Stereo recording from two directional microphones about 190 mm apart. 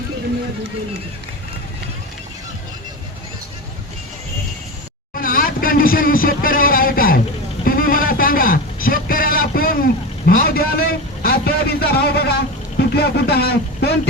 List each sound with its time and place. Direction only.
5.1 s vehicle: 50° left (ahead or behind)
7.6 s a sound: 50° left (ahead or behind)
12.9 s speech: 55° left (ahead or behind)